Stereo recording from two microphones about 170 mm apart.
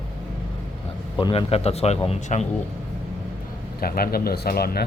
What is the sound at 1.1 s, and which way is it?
Speech, 30° left (ahead or behind).